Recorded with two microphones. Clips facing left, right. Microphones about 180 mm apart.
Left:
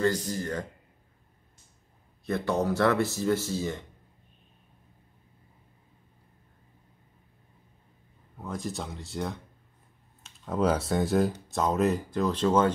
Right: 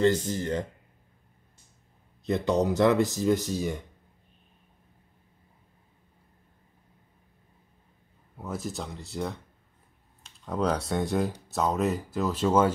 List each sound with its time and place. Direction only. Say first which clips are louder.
0.0 s speech: right 3 dB; 25° right (ahead or behind)
2.2 s speech: right 2 dB; 20° right (ahead or behind)
8.4 s speech: even; 5° right (ahead or behind)